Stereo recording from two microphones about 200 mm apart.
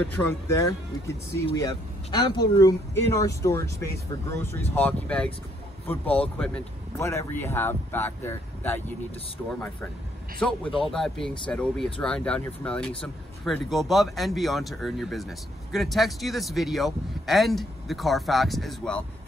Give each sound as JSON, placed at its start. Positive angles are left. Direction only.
{"t": 0.0, "sound": "speech", "side_deg": 15}
{"t": 10.4, "sound": "speech", "side_deg": 5}